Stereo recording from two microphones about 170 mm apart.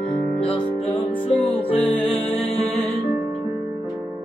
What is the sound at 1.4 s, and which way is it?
Music, 30° left (ahead or behind).